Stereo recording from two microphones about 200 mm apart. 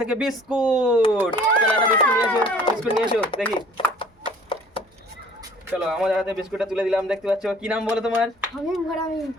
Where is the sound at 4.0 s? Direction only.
25° left (ahead or behind).